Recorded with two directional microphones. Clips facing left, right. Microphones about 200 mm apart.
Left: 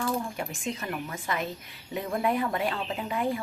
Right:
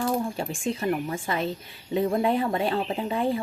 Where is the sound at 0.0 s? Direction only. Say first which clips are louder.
Right 4 dB; 30° right (ahead or behind).